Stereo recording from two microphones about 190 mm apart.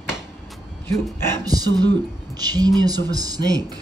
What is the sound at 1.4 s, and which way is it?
Speech, 20° right (ahead or behind).